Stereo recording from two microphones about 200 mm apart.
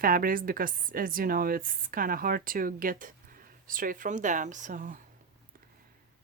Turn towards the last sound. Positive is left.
turn(degrees=-40)  # may be behind; listen again after turning